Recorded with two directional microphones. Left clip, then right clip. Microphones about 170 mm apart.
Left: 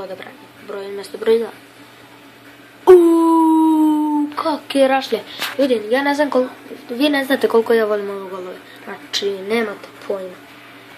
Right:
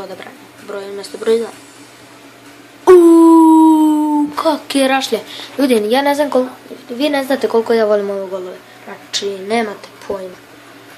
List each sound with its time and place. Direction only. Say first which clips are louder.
0.0 s a woman's voice: right 1 dB; 5° right (ahead or behind)
2.8 s a sound: right 3 dB; 5° right (ahead or behind)
5.6 s a woman's voice: right 4 dB; 40° right (ahead or behind)
6.0 s a woman's voice: right 3 dB; 5° right (ahead or behind)
7.6 s speech: right 3 dB; 15° right (ahead or behind)
9.5 s speech: right 3 dB; 10° right (ahead or behind)